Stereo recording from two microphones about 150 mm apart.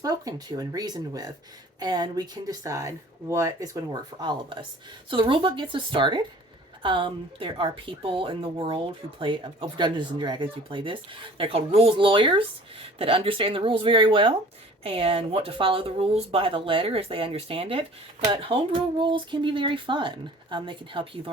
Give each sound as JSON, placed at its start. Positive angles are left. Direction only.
{"t": 0.0, "sound": "speech", "side_deg": -25}